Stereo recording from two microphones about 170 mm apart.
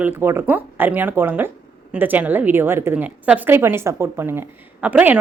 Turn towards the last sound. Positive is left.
turn(degrees=-10)  # may be behind; listen again after turning